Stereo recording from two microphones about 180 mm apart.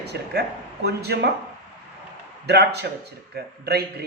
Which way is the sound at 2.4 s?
65° right (ahead or behind).